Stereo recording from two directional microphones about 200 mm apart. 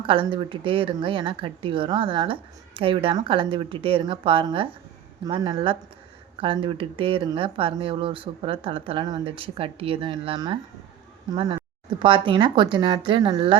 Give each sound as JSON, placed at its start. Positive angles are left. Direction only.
{"t": 0.0, "sound": "speech", "side_deg": -25}